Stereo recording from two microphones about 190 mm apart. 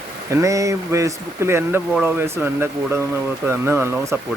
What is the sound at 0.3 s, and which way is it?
Speech, 15° right (ahead or behind).